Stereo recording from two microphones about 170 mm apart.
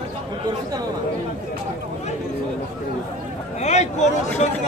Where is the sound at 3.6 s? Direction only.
40° left (ahead or behind).